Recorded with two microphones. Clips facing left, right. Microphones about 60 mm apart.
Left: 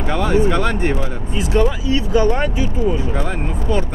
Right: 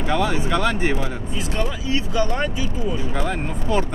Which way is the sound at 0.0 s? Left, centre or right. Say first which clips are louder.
Even; left.